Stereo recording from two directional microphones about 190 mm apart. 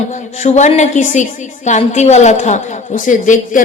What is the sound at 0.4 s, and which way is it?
A woman's voice, 40° left (ahead or behind).